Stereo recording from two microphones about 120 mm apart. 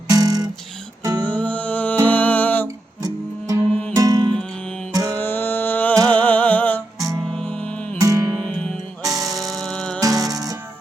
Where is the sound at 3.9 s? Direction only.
30° right (ahead or behind).